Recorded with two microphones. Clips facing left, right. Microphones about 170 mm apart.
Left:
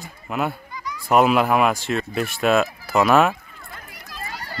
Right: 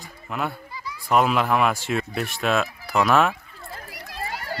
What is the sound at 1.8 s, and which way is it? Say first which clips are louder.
Speech: left 2 dB; 10° right (ahead or behind).